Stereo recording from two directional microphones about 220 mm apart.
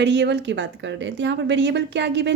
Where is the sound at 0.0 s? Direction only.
50° right (ahead or behind).